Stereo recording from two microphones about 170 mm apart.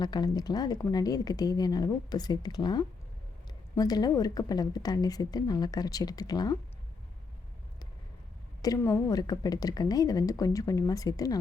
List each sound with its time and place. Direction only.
0.0 s a woman's voice: 25° left (ahead or behind)
8.6 s a woman's voice: 20° left (ahead or behind)